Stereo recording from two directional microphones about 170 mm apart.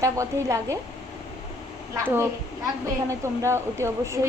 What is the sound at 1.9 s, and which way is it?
Speech, 15° right (ahead or behind).